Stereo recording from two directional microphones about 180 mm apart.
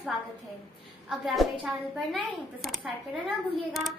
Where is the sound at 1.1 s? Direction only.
Centre (ahead or behind).